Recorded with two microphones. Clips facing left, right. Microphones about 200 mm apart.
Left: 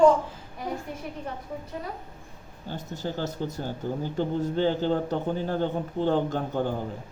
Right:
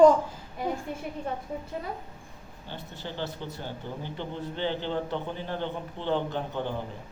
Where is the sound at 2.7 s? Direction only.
40° left (ahead or behind).